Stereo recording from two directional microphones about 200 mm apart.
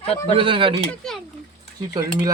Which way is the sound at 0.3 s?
25° right (ahead or behind).